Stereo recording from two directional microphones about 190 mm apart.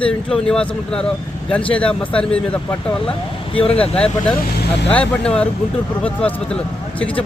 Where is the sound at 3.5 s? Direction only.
30° left (ahead or behind).